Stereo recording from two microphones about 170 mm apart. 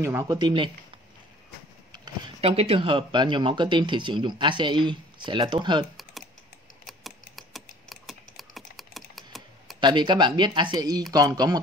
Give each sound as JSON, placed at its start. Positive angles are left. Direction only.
{"t": 0.0, "sound": "speech", "side_deg": -15}
{"t": 1.9, "sound": "a sound", "side_deg": -25}
{"t": 2.4, "sound": "speech", "side_deg": -35}
{"t": 6.9, "sound": "typing", "side_deg": 0}
{"t": 9.8, "sound": "speech", "side_deg": -25}